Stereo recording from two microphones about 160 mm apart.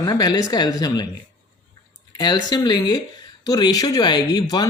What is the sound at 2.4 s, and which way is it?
Speech, 25° left (ahead or behind).